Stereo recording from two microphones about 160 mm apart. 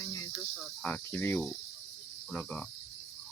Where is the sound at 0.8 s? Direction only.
10° left (ahead or behind).